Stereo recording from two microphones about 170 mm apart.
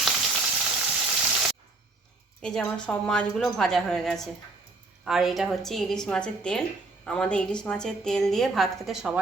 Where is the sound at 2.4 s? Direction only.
5° left (ahead or behind).